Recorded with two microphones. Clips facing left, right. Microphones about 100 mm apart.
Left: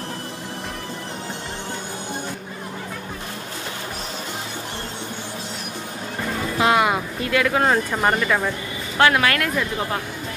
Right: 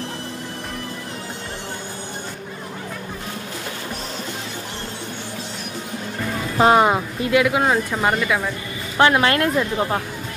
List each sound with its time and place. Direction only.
6.6 s speech: 30° right (ahead or behind)
7.2 s speech: 15° right (ahead or behind)
8.9 s a woman's voice: 20° right (ahead or behind)